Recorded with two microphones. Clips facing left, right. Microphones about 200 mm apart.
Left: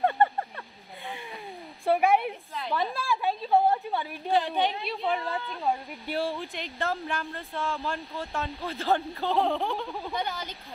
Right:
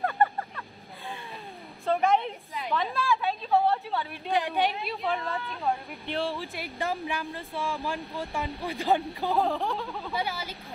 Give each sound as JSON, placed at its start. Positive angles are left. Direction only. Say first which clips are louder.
{"t": 0.0, "sound": "vehicle", "louder": "left 2 dB", "side_deg": 25}
{"t": 1.9, "sound": "a sound", "louder": "left 2 dB", "side_deg": 10}
{"t": 2.7, "sound": "a woman's voice", "louder": "right 1 dB", "side_deg": 15}
{"t": 4.3, "sound": "speech", "louder": "left 1 dB", "side_deg": -15}
{"t": 4.8, "sound": "speech", "louder": "left 1 dB", "side_deg": 0}
{"t": 5.2, "sound": "speech", "louder": "left 1 dB", "side_deg": 15}
{"t": 6.8, "sound": "speech", "louder": "even", "side_deg": -15}
{"t": 9.3, "sound": "speech", "louder": "left 1 dB", "side_deg": 0}